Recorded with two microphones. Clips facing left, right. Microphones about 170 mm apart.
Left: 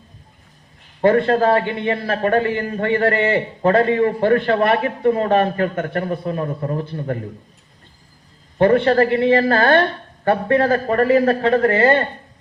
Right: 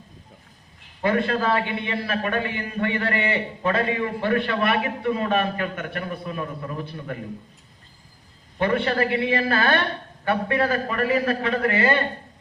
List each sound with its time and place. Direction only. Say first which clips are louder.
1.0 s a man's voice: left 8 dB; 45° left (ahead or behind)
8.5 s a man's voice: left 8 dB; 45° left (ahead or behind)